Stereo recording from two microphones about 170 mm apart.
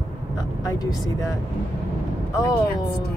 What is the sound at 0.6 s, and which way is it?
Speech, 20° left (ahead or behind).